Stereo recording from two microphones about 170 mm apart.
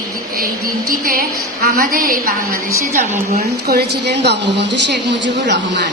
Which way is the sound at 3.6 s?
75° right (ahead or behind).